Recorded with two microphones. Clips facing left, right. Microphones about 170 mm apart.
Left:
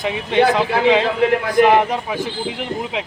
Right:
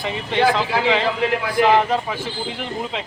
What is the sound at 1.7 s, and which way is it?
Speech, 15° left (ahead or behind).